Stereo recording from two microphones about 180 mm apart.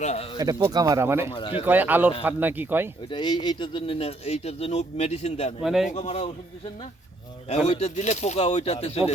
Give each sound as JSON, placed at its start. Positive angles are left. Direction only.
{"t": 0.0, "sound": "speech", "side_deg": 40}
{"t": 0.3, "sound": "speech", "side_deg": -20}
{"t": 1.3, "sound": "speech", "side_deg": 25}
{"t": 1.6, "sound": "speech", "side_deg": -10}
{"t": 3.1, "sound": "speech", "side_deg": 25}
{"t": 5.6, "sound": "a man's voice", "side_deg": 0}
{"t": 6.0, "sound": "speech", "side_deg": 35}
{"t": 7.7, "sound": "speech", "side_deg": 40}